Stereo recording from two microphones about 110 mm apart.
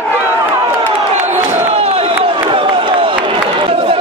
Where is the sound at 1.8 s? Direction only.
60° right (ahead or behind).